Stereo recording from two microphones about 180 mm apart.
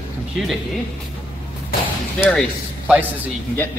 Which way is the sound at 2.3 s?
Centre (ahead or behind).